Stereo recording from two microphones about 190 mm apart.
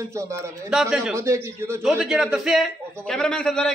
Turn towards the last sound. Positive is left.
turn(degrees=5)  # may be behind; listen again after turning